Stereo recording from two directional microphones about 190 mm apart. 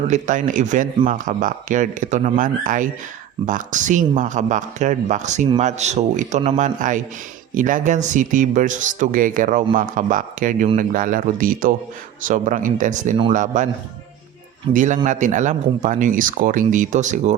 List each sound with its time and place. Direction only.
0.1 s speech: 45° right (ahead or behind)
14.7 s speech: 45° right (ahead or behind)